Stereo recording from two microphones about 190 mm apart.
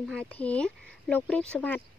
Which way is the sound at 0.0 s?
5° left (ahead or behind).